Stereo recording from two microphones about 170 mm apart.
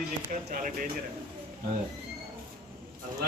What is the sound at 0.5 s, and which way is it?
Speech, 55° right (ahead or behind).